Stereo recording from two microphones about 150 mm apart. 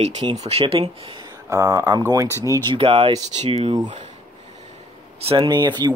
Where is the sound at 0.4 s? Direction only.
40° right (ahead or behind).